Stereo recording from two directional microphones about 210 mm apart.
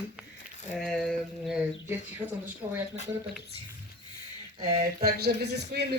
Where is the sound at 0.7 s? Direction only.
Centre (ahead or behind).